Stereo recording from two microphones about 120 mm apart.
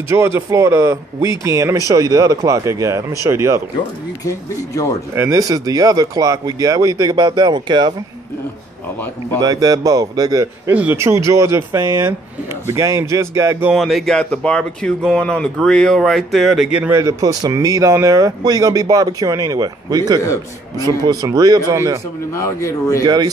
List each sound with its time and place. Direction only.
0.1 s speech: 20° right (ahead or behind)
4.2 s speech: 30° left (ahead or behind)
5.1 s speech: 25° right (ahead or behind)
9.4 s speech: 30° right (ahead or behind)
10.7 s speech: 15° right (ahead or behind)
13.7 s speech: centre (ahead or behind)
16.9 s speech: 30° right (ahead or behind)
22.3 s speech: 25° left (ahead or behind)
23.0 s speech: 35° right (ahead or behind)